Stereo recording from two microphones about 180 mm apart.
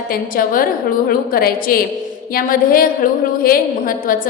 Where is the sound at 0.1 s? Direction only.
50° left (ahead or behind).